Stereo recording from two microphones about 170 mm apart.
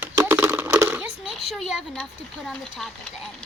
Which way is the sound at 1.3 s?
Centre (ahead or behind).